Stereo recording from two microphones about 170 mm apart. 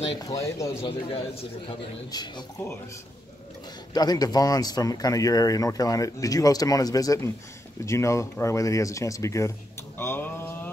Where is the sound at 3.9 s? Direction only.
25° left (ahead or behind).